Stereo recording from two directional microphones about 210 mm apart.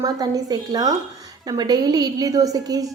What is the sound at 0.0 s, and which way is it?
A woman's voice, 15° right (ahead or behind).